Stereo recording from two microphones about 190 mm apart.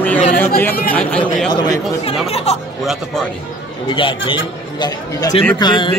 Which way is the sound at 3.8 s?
25° left (ahead or behind).